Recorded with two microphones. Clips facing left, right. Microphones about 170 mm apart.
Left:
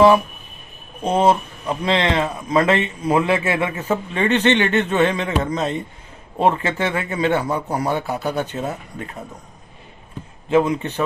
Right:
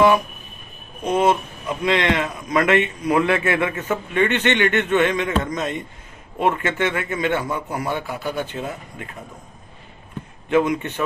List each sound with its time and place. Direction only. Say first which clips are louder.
1.0 s speech: left 2 dB; 30° left (ahead or behind)
10.5 s a man's voice: left 1 dB; 30° left (ahead or behind)